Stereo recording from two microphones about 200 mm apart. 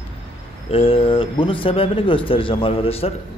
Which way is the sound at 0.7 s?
25° left (ahead or behind).